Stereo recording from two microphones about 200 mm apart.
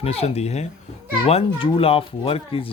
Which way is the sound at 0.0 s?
30° left (ahead or behind).